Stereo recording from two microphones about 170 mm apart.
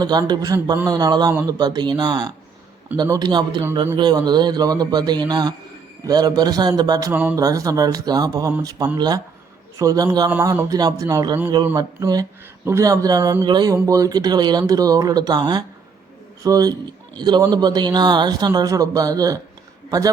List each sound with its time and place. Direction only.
0.0 s speech: 25° right (ahead or behind)
7.1 s speech: 10° right (ahead or behind)